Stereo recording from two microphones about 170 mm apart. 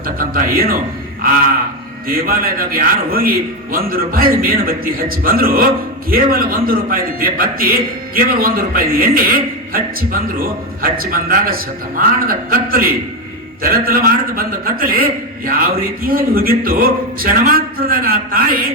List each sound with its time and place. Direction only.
0.2 s a man's voice: 55° right (ahead or behind)
2.0 s a man's voice: 60° right (ahead or behind)